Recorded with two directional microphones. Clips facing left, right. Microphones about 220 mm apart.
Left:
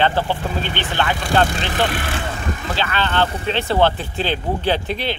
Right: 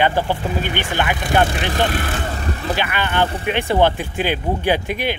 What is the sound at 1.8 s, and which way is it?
Speech, 40° right (ahead or behind).